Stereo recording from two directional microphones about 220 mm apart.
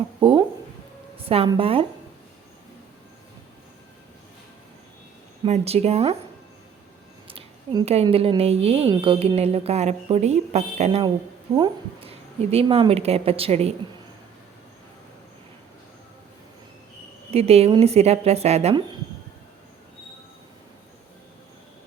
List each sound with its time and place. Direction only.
0.2 s a sound: 25° right (ahead or behind)
1.3 s speech: 25° right (ahead or behind)
5.5 s speech: 30° right (ahead or behind)
7.3 s speech: 20° right (ahead or behind)
17.3 s speech: 25° right (ahead or behind)